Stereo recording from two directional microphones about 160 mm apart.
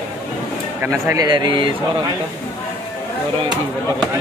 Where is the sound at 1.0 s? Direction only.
25° right (ahead or behind).